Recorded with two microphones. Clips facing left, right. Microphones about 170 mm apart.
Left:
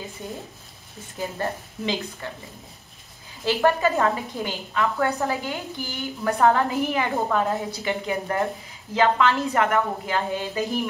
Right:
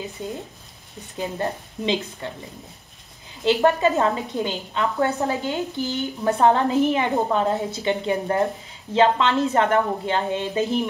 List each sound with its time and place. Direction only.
0.2 s a woman's voice: 20° right (ahead or behind)
3.4 s a woman's voice: 20° right (ahead or behind)